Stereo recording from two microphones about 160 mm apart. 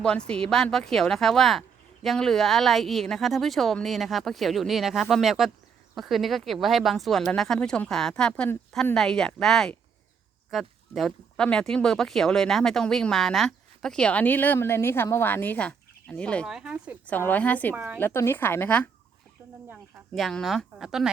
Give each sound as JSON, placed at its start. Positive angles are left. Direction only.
{"t": 0.0, "sound": "speech", "side_deg": 5}
{"t": 17.1, "sound": "a woman's voice", "side_deg": 10}
{"t": 17.7, "sound": "a woman's voice", "side_deg": -15}
{"t": 18.0, "sound": "a woman's voice", "side_deg": 15}